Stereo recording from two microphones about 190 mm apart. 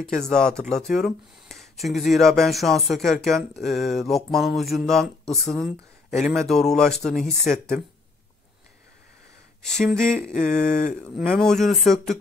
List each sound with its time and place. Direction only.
0.2 s speech: 5° left (ahead or behind)
9.6 s speech: 5° left (ahead or behind)
10.3 s a sound: 40° left (ahead or behind)
11.1 s speech: centre (ahead or behind)